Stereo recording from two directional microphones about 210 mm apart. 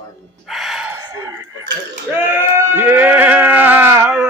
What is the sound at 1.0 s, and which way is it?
Chicken, 15° right (ahead or behind).